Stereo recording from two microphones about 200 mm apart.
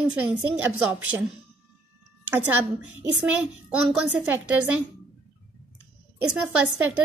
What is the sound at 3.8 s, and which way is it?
Speech, 5° right (ahead or behind).